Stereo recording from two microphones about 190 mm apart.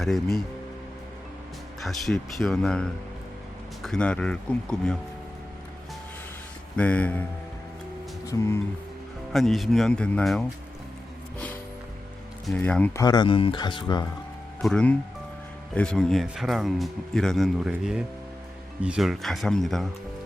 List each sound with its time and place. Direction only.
0.0 s speech: centre (ahead or behind)
1.8 s speech: centre (ahead or behind)
6.7 s speech: 5° left (ahead or behind)
8.3 s speech: 15° left (ahead or behind)
9.3 s speech: centre (ahead or behind)
12.5 s speech: 5° left (ahead or behind); by 14.1 s 20° left (ahead or behind)
14.6 s speech: 5° left (ahead or behind)